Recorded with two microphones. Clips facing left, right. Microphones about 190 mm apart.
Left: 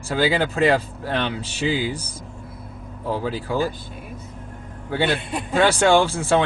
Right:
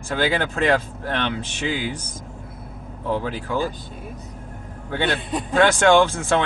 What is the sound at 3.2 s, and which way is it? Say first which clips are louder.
Speech: left 1 dB; 10° left (ahead or behind).